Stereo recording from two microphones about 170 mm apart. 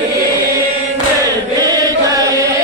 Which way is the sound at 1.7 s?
20° right (ahead or behind).